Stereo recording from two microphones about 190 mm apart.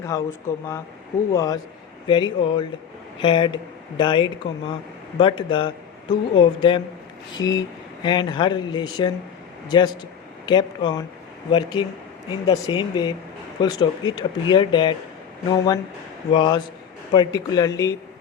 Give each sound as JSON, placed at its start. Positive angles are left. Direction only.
{"t": 0.0, "sound": "speech", "side_deg": 15}